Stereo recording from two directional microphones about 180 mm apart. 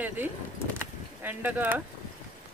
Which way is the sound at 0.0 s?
10° right (ahead or behind).